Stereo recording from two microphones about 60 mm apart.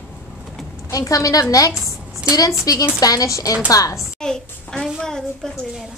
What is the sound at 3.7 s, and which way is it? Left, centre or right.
Speech, left.